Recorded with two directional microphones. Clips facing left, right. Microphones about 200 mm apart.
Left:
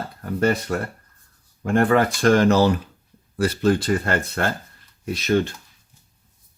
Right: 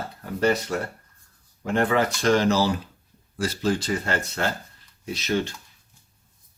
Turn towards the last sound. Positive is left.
turn(degrees=55)  # may be behind; listen again after turning